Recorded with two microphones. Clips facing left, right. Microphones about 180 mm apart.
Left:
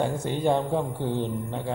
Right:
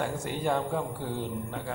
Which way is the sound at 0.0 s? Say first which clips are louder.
Left 5 dB; 25° left (ahead or behind).